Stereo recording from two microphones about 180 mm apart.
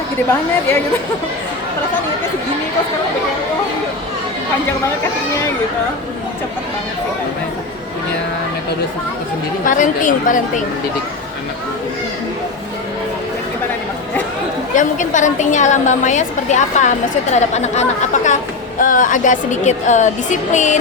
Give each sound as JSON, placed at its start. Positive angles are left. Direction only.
{"t": 9.6, "sound": "a woman's voice", "side_deg": 45}
{"t": 14.8, "sound": "a woman's voice", "side_deg": 45}